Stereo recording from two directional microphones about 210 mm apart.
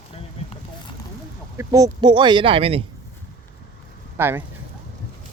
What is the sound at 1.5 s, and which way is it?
Speech, 15° right (ahead or behind).